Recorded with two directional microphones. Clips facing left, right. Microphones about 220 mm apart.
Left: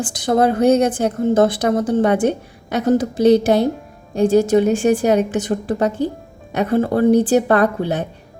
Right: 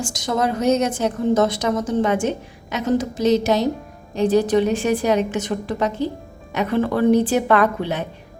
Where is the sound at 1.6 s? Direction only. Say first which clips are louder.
Left 4 dB; 55° left (ahead or behind).